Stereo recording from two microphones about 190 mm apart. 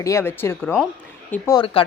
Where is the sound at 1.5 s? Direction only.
25° left (ahead or behind).